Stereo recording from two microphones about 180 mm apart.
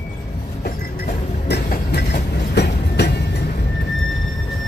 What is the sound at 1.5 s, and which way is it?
Train, 60° left (ahead or behind).